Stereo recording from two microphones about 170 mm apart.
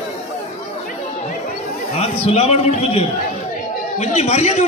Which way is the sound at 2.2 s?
35° left (ahead or behind).